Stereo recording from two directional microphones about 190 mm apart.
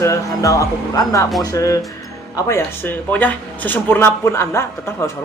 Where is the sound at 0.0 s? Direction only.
15° left (ahead or behind).